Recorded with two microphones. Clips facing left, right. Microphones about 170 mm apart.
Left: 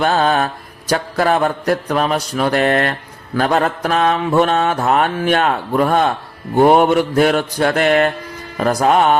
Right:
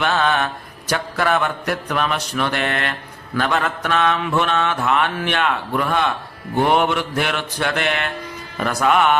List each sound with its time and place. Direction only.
0.0 s mantra: 35° left (ahead or behind)